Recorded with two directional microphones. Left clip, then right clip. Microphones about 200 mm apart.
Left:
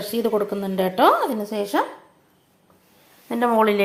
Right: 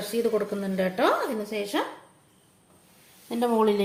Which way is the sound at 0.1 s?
15° left (ahead or behind).